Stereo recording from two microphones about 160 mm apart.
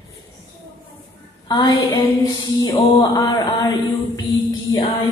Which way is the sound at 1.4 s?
25° left (ahead or behind).